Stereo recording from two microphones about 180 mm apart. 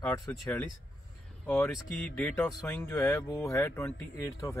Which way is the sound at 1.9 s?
10° left (ahead or behind).